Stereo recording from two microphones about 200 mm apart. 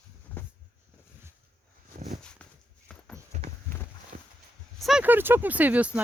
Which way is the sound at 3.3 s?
35° right (ahead or behind).